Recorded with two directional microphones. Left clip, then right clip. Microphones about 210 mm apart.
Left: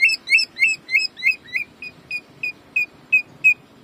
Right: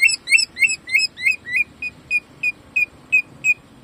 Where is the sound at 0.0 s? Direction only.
5° right (ahead or behind).